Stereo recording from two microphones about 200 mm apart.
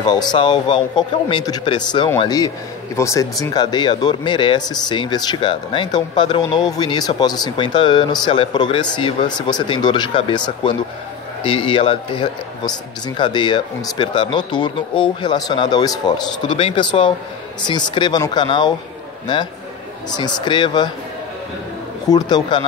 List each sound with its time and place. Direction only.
0.0 s speech: 20° left (ahead or behind)
22.1 s speech: 20° left (ahead or behind)